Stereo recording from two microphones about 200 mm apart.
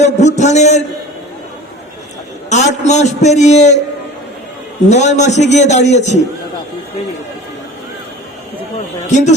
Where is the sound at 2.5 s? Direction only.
35° left (ahead or behind).